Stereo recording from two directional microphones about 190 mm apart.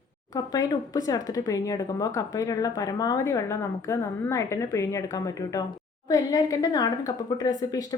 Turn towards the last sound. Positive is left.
turn(degrees=20)  # may be behind; listen again after turning